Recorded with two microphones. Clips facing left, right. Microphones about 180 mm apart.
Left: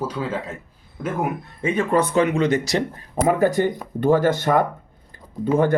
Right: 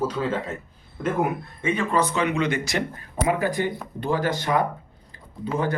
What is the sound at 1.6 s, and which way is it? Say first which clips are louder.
Speech: left 4 dB; 35° left (ahead or behind).